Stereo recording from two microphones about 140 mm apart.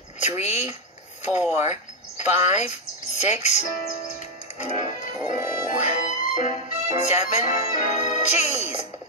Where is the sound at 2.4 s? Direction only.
55° left (ahead or behind).